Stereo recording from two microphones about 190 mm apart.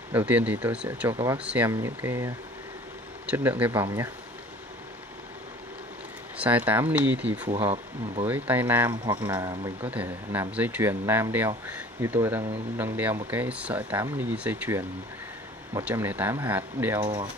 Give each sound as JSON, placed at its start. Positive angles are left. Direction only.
{"t": 0.1, "sound": "speech", "side_deg": -10}
{"t": 6.3, "sound": "speech", "side_deg": -5}
{"t": 9.8, "sound": "speech", "side_deg": -10}